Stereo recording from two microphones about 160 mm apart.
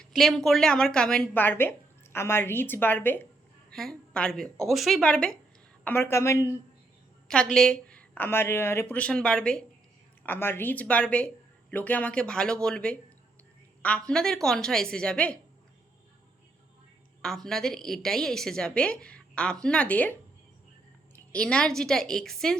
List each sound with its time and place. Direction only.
0.0 s a woman's voice: centre (ahead or behind); by 6.5 s 15° left (ahead or behind)
7.5 s a woman's voice: 5° left (ahead or behind)
17.2 s a woman's voice: 5° left (ahead or behind)
21.3 s a woman's voice: 5° left (ahead or behind)